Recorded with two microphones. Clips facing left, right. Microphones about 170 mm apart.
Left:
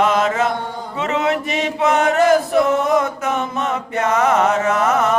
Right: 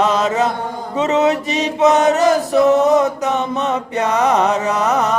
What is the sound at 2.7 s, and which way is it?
Mantra, 20° right (ahead or behind).